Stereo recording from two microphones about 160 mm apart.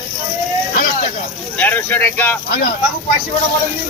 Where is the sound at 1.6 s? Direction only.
10° left (ahead or behind).